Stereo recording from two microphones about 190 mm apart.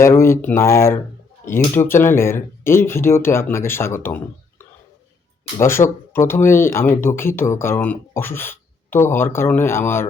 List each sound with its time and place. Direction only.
0.0 s speech: 15° left (ahead or behind)